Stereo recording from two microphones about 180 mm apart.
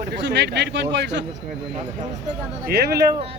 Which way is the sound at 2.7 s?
60° right (ahead or behind).